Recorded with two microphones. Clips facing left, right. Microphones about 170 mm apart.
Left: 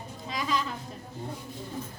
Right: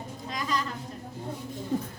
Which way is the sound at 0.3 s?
5° left (ahead or behind).